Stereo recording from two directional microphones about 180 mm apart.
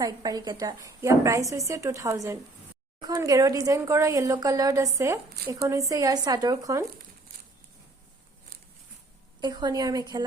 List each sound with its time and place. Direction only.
0.0 s a woman's voice: 20° right (ahead or behind)
9.4 s a woman's voice: 25° right (ahead or behind)